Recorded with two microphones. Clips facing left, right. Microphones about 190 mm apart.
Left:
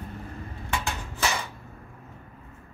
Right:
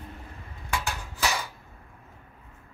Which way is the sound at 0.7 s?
10° right (ahead or behind).